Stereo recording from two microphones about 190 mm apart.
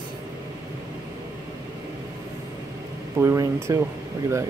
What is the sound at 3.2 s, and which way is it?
Speech, 15° right (ahead or behind).